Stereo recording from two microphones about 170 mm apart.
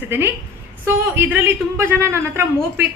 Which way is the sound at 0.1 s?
15° right (ahead or behind).